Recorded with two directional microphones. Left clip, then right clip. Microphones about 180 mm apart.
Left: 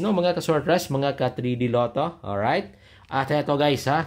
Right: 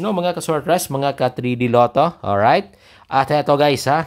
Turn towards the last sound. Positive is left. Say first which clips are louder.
# right 6 dB
turn(degrees=-30)  # may be behind; listen again after turning